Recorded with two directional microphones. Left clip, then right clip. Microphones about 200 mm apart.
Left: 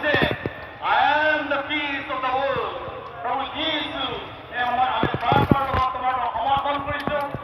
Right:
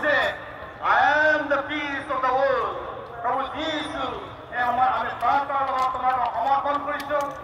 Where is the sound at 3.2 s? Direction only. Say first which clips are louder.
Even; 15° right (ahead or behind).